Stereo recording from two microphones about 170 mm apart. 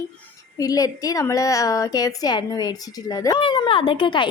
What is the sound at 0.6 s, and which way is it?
A woman's voice, 20° left (ahead or behind).